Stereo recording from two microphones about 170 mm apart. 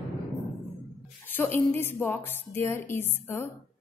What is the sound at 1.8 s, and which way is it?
A woman's voice, 15° left (ahead or behind).